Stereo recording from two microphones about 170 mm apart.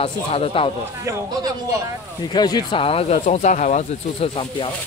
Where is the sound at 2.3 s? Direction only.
25° left (ahead or behind).